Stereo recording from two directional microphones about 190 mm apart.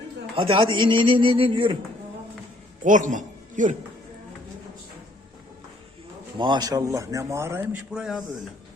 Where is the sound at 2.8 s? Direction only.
40° right (ahead or behind).